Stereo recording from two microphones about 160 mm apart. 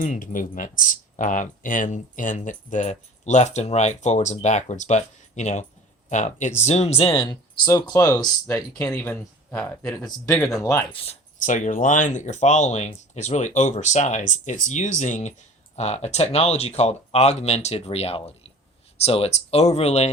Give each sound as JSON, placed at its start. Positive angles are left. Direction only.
{"t": 0.0, "sound": "speech", "side_deg": 55}
{"t": 10.9, "sound": "speech", "side_deg": 35}
{"t": 11.3, "sound": "speech", "side_deg": 55}